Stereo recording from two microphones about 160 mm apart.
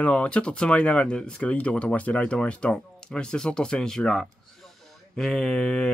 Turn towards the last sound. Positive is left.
turn(degrees=5)  # may be behind; listen again after turning